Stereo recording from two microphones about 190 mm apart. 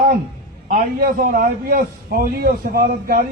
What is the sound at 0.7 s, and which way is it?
A man's voice, 50° right (ahead or behind).